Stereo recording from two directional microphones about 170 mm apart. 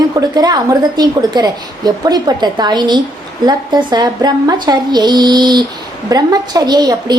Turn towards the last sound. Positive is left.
turn(degrees=-25)  # may be behind; listen again after turning